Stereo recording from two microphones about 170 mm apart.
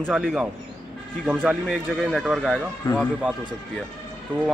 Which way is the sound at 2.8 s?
25° left (ahead or behind).